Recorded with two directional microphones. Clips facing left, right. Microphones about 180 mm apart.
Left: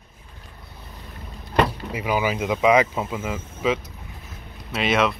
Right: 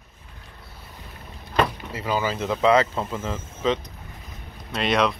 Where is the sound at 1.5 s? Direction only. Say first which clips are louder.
Left 2 dB; 10° left (ahead or behind).